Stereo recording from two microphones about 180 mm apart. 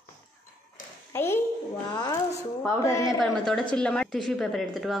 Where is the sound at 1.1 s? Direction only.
15° left (ahead or behind).